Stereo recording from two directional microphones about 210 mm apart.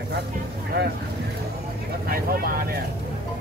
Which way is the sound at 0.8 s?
50° right (ahead or behind).